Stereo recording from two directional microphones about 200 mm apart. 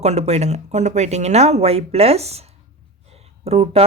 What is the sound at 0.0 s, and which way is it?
Speech, 30° right (ahead or behind).